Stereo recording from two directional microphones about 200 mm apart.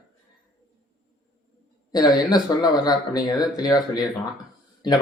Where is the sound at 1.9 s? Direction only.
20° left (ahead or behind).